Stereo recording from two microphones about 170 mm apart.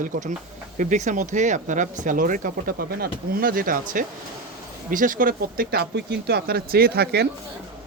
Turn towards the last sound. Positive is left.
turn(degrees=-70)  # may be behind; listen again after turning